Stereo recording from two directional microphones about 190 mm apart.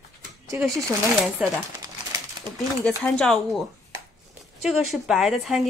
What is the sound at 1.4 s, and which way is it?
Speech, 5° right (ahead or behind).